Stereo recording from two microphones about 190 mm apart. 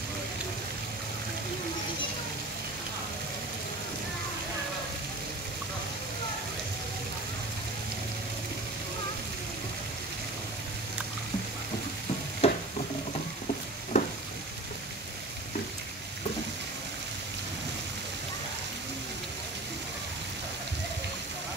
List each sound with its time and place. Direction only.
12.4 s stir: 30° left (ahead or behind)
13.9 s frying: 35° left (ahead or behind)